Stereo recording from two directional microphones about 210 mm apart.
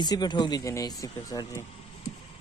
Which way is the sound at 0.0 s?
20° left (ahead or behind).